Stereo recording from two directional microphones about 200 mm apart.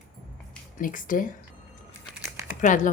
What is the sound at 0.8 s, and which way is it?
Speech, 40° left (ahead or behind).